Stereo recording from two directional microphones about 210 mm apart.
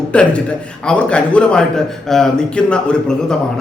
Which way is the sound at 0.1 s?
5° left (ahead or behind).